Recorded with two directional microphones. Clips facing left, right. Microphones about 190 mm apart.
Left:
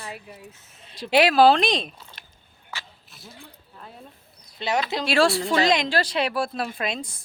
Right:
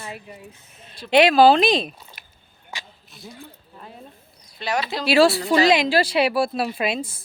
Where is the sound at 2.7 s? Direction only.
15° right (ahead or behind).